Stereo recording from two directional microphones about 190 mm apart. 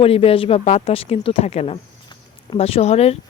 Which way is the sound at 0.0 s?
30° left (ahead or behind).